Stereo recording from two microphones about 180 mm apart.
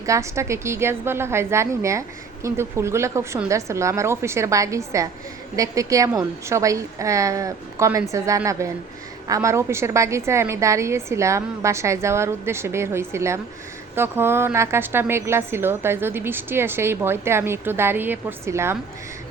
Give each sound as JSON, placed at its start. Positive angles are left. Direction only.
{"t": 0.0, "sound": "a woman's voice", "side_deg": -15}